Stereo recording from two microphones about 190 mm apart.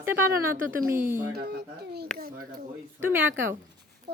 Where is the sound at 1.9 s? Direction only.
55° right (ahead or behind).